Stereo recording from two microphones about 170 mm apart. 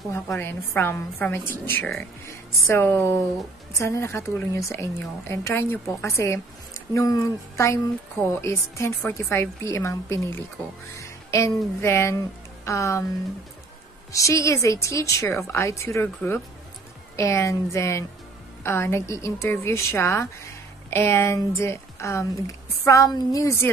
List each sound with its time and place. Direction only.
0.1 s a woman's voice: 15° left (ahead or behind)
14.1 s a woman's voice: 15° left (ahead or behind)